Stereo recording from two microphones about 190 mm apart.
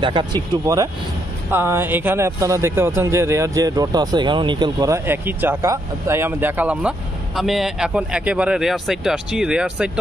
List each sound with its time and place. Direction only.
0.0 s speech: 25° right (ahead or behind); by 9.8 s 5° right (ahead or behind)